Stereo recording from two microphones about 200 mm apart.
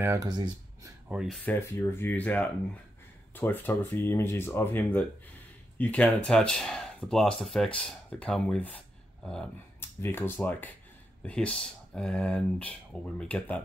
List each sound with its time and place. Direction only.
0.0 s speech: 15° right (ahead or behind)
1.0 s speech: 5° right (ahead or behind)